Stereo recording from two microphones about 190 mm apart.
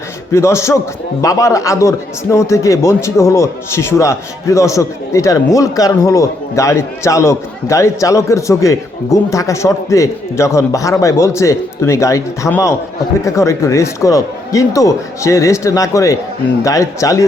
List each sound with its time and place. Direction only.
0.3 s a man's voice: 15° left (ahead or behind)